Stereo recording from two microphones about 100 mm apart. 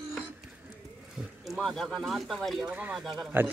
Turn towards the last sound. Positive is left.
turn(degrees=-5)  # may be behind; listen again after turning